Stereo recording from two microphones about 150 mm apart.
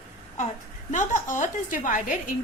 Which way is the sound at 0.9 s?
60° left (ahead or behind).